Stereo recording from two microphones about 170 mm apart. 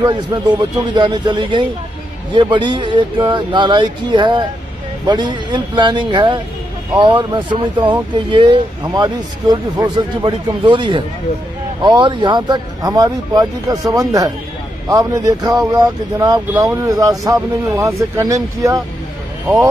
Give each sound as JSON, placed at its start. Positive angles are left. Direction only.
{"t": 0.0, "sound": "speech", "side_deg": -25}